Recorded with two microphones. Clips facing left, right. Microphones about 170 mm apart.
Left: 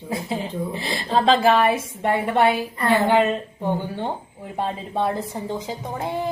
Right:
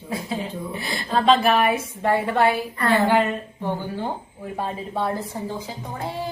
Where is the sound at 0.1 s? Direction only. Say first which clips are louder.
Left 1 dB; 25° left (ahead or behind).